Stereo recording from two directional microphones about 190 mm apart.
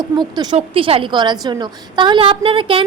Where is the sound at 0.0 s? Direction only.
20° right (ahead or behind).